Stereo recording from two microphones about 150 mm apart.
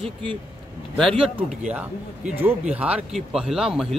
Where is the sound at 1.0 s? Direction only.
Centre (ahead or behind).